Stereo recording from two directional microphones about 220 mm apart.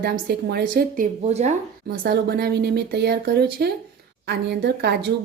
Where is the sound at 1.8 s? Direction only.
45° right (ahead or behind).